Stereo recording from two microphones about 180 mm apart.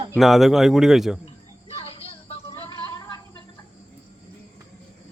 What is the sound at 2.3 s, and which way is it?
Music, 25° left (ahead or behind).